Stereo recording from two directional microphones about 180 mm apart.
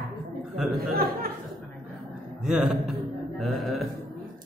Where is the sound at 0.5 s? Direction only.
Centre (ahead or behind).